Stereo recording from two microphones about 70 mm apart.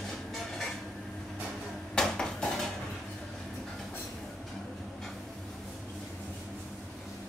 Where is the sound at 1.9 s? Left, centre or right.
Centre.